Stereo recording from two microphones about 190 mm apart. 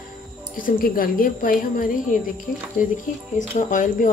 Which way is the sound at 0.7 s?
50° left (ahead or behind).